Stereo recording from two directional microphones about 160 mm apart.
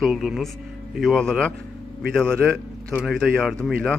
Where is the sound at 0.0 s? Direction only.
Centre (ahead or behind).